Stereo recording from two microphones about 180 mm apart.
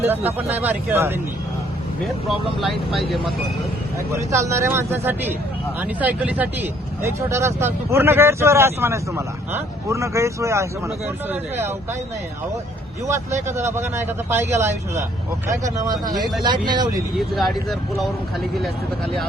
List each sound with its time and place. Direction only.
0.0 s speech: 10° right (ahead or behind)
2.6 s speech: centre (ahead or behind)
4.1 s speech: 15° right (ahead or behind)
13.1 s speech: 15° right (ahead or behind)
17.2 s speech: centre (ahead or behind)